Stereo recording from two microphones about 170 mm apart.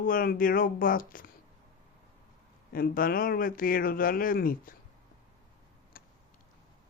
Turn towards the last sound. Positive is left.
turn(degrees=60)  # may be behind; listen again after turning